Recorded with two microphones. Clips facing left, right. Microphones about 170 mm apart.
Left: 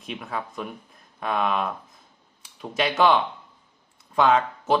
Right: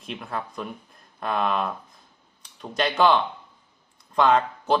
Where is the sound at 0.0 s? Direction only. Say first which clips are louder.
Even; centre (ahead or behind).